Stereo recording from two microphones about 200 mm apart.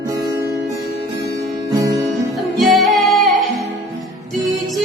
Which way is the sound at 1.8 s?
15° right (ahead or behind).